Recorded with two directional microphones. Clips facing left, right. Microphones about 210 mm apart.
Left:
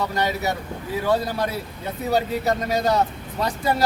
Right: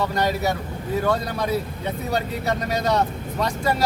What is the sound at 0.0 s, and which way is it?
Speech, centre (ahead or behind).